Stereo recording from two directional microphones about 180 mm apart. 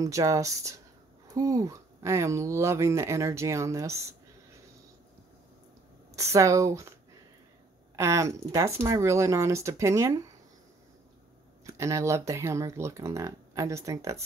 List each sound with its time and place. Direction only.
0.0 s speech: 20° right (ahead or behind)
6.1 s speech: 15° right (ahead or behind)
7.9 s speech: 15° right (ahead or behind)
11.6 s speech: 15° right (ahead or behind)